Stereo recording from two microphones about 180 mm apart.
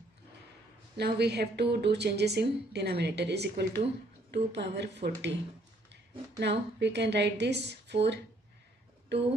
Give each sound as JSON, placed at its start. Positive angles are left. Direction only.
{"t": 0.9, "sound": "speech", "side_deg": -65}
{"t": 6.4, "sound": "speech", "side_deg": -70}